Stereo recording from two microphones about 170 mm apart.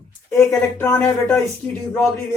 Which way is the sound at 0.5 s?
10° left (ahead or behind).